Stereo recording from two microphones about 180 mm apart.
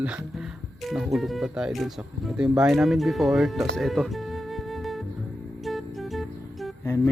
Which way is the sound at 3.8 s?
Centre (ahead or behind).